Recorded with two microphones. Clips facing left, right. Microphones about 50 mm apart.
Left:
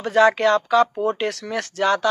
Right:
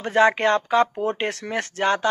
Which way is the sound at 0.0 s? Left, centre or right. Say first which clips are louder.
Left 2 dB; right.